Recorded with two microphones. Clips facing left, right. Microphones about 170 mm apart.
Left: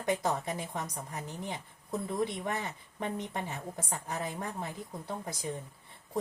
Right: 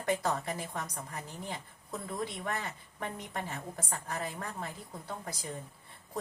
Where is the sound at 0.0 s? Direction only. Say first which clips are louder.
Left 1 dB; 20° left (ahead or behind).